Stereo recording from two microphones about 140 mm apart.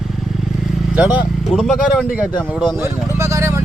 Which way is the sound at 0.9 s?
10° right (ahead or behind).